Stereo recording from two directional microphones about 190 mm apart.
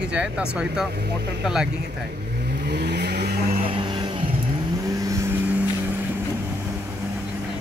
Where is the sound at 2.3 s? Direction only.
60° right (ahead or behind).